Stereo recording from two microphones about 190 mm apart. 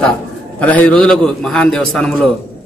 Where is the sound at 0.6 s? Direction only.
10° left (ahead or behind).